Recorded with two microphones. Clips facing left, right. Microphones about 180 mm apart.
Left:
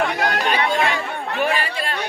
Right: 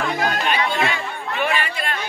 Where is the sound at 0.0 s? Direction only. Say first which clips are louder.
Left 1 dB; 70° left (ahead or behind).